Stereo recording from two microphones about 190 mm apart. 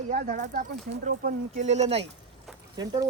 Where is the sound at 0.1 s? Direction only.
45° right (ahead or behind).